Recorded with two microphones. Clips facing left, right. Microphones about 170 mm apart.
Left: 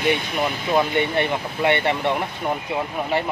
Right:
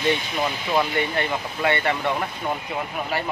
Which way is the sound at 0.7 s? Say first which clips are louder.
Left 3 dB; 20° left (ahead or behind).